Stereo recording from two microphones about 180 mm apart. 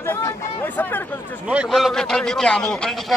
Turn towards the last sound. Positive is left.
turn(degrees=0)  # may be behind; listen again after turning